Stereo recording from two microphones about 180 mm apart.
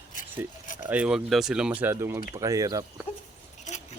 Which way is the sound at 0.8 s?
10° right (ahead or behind).